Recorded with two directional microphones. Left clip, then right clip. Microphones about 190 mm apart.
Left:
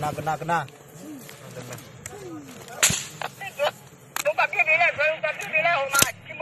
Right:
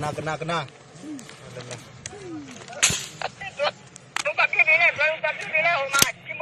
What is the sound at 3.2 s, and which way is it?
Whip, 45° left (ahead or behind).